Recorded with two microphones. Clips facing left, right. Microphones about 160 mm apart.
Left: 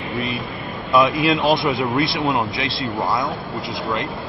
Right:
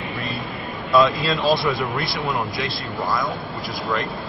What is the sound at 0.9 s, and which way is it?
Speech, 20° left (ahead or behind).